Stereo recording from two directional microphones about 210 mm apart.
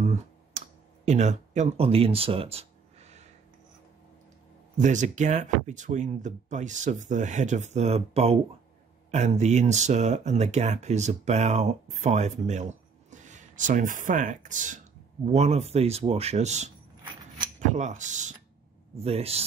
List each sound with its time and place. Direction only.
0.0 s computer keyboard: 35° right (ahead or behind)
4.7 s a man's voice: 35° right (ahead or behind)